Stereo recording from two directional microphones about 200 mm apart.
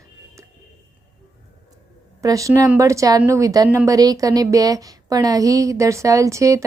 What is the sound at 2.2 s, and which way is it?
A woman's voice, 15° right (ahead or behind).